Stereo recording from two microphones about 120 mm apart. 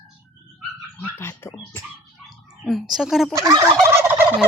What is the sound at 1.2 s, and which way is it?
Dog, 20° left (ahead or behind).